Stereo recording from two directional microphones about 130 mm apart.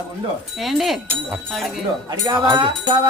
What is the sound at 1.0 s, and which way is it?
Speech, 15° right (ahead or behind).